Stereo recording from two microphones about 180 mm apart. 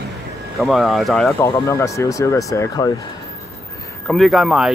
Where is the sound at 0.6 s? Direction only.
Centre (ahead or behind).